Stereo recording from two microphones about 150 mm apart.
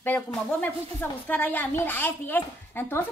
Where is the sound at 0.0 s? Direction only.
10° left (ahead or behind).